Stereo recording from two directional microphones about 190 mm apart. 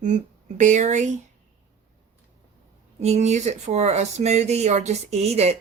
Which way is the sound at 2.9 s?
35° right (ahead or behind).